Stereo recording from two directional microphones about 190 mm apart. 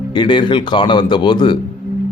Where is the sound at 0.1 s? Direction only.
25° left (ahead or behind).